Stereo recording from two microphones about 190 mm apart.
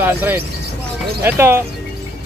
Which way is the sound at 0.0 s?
10° right (ahead or behind).